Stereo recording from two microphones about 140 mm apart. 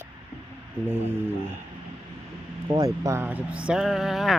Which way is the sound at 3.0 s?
15° right (ahead or behind).